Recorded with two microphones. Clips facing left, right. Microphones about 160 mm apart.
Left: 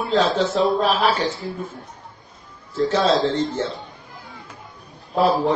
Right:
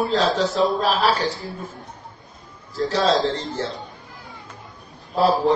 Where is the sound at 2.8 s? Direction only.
35° right (ahead or behind).